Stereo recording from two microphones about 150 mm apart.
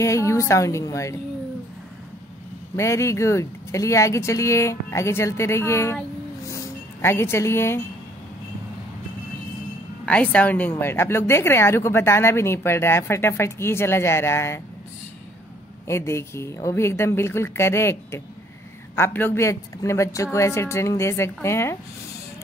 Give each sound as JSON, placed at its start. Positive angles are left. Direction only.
{"t": 0.0, "sound": "speech", "side_deg": 20}
{"t": 2.7, "sound": "speech", "side_deg": 20}
{"t": 6.5, "sound": "music", "side_deg": 15}
{"t": 10.0, "sound": "a woman's voice", "side_deg": 10}
{"t": 15.9, "sound": "a woman's voice", "side_deg": 20}